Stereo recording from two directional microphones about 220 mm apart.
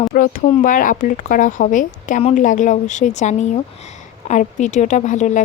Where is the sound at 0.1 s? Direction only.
35° left (ahead or behind).